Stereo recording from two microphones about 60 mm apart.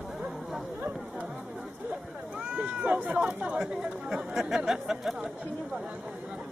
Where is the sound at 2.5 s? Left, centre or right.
Right; by 5.3 s centre.